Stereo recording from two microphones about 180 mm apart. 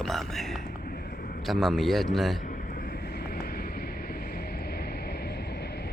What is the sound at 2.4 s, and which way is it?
Vehicle, 50° left (ahead or behind).